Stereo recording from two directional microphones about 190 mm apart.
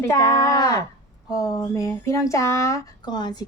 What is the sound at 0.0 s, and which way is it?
Speech, 15° left (ahead or behind).